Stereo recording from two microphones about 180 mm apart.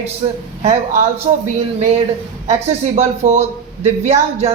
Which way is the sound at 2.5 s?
35° right (ahead or behind).